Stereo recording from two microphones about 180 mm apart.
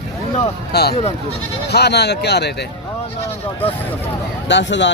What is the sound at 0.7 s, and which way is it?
Speech, 65° left (ahead or behind).